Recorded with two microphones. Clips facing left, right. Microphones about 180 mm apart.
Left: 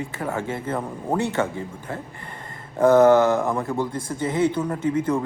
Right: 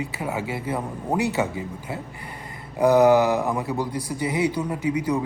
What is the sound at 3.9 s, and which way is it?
Speech, 50° left (ahead or behind).